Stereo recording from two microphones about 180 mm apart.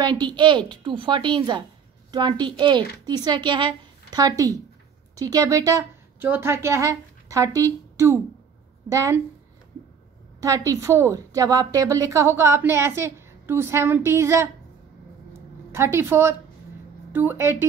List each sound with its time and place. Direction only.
0.0 s a woman's voice: 25° right (ahead or behind)
10.4 s a woman's voice: 20° right (ahead or behind)
15.7 s a woman's voice: 15° right (ahead or behind)